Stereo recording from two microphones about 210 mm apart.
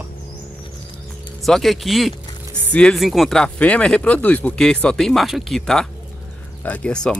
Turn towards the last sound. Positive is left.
turn(degrees=5)  # may be behind; listen again after turning